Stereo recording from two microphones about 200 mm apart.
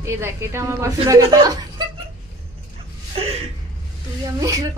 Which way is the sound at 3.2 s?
30° right (ahead or behind).